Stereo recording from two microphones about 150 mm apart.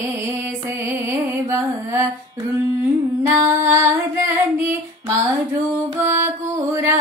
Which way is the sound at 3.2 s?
20° right (ahead or behind).